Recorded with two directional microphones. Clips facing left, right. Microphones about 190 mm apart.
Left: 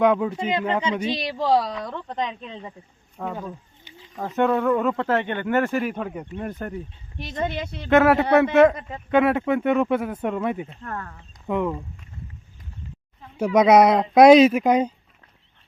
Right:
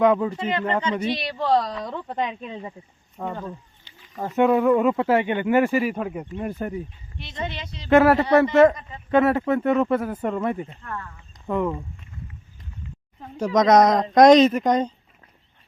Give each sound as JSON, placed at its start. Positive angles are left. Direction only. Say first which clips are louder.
{"t": 0.0, "sound": "speech", "louder": "even", "side_deg": 0}
{"t": 7.2, "sound": "speech", "louder": "left 5 dB", "side_deg": 45}
{"t": 7.9, "sound": "speech", "louder": "right 1 dB", "side_deg": 0}
{"t": 13.3, "sound": "speech", "louder": "left 1 dB", "side_deg": 10}